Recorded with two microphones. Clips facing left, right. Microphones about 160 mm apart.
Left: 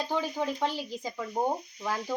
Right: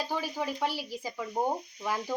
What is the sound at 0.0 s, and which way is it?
A child's voice, 10° right (ahead or behind).